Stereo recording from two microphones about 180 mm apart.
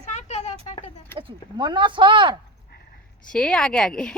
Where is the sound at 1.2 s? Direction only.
25° right (ahead or behind).